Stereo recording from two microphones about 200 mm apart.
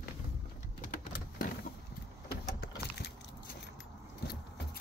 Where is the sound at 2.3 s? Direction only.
55° left (ahead or behind).